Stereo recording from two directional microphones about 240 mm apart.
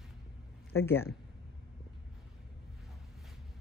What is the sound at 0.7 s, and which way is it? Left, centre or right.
Speech, left.